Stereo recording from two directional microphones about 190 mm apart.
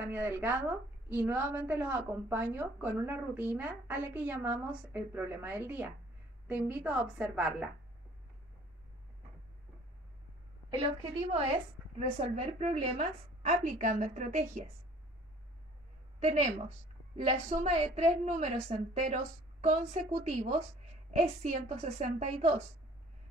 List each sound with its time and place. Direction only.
0.0 s a woman's voice: 10° right (ahead or behind)
10.7 s a woman's voice: 30° right (ahead or behind)
16.2 s a woman's voice: 35° right (ahead or behind)